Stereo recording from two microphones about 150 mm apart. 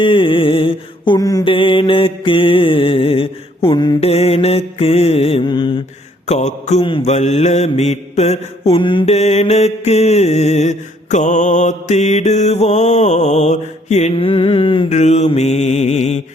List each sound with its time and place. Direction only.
0.0 s mantra: 35° left (ahead or behind)
1.5 s mantra: 35° left (ahead or behind)
4.0 s mantra: 45° left (ahead or behind)
5.5 s mantra: 30° left (ahead or behind)
6.2 s mantra: 50° left (ahead or behind)
6.8 s mantra: 35° left (ahead or behind)
7.1 s mantra: 50° left (ahead or behind); by 9.0 s 35° left (ahead or behind)
9.0 s mantra: 45° left (ahead or behind)
14.8 s mantra: 50° left (ahead or behind)